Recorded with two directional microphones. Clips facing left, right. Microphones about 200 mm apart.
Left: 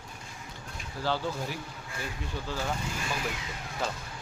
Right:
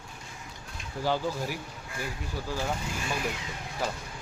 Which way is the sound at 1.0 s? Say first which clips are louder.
Right 2 dB; 15° right (ahead or behind).